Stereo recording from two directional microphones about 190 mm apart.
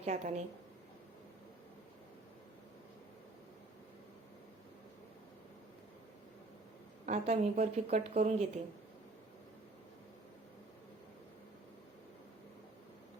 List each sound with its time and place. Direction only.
0.0 s a woman's voice: 35° right (ahead or behind)
7.0 s a woman's voice: 35° right (ahead or behind)